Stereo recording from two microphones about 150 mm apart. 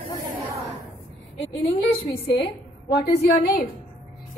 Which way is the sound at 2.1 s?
35° left (ahead or behind).